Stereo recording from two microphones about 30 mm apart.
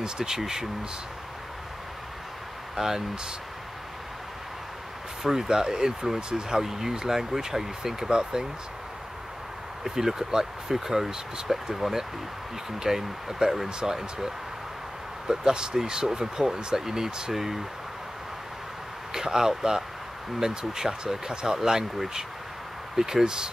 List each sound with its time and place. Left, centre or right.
0.2 s speech: centre
2.7 s speech: centre
5.2 s speech: centre
6.6 s speech: centre
9.8 s speech: centre
15.2 s speech: right; by 17.6 s centre
19.1 s speech: centre
23.2 s speech: right